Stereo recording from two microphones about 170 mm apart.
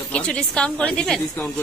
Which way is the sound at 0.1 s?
5° left (ahead or behind).